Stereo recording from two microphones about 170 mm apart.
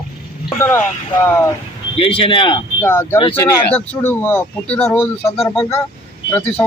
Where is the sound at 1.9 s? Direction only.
30° left (ahead or behind).